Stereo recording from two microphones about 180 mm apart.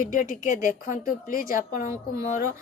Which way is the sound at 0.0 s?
50° left (ahead or behind).